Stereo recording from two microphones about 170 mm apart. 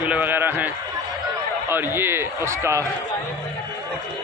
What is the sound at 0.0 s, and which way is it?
Run, 10° right (ahead or behind).